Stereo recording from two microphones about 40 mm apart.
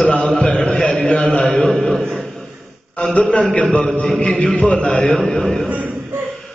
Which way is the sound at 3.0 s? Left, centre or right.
Left.